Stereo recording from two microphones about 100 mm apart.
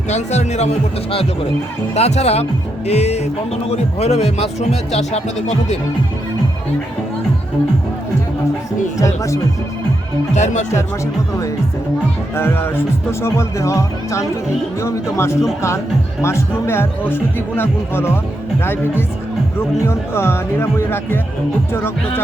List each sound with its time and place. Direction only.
0.3 s speech: 90° left
2.0 s speech: 90° left
9.0 s speech: 30° left (ahead or behind)
12.4 s speech: 25° left (ahead or behind)